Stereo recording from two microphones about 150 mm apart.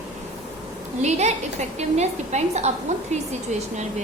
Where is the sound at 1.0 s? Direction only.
50° right (ahead or behind).